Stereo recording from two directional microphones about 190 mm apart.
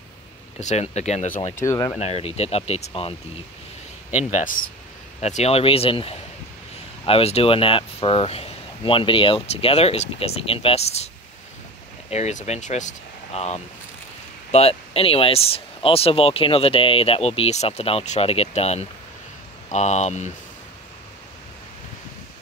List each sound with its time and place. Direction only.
0.6 s speech: 35° left (ahead or behind)
1.6 s speech: 15° left (ahead or behind)
2.0 s speech: 35° left (ahead or behind)
4.3 s speech: 40° left (ahead or behind)
12.1 s speech: 35° left (ahead or behind)